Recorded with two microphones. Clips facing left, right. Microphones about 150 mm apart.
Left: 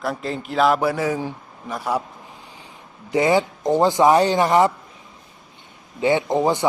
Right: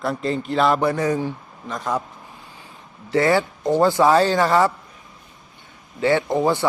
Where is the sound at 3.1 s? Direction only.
15° left (ahead or behind).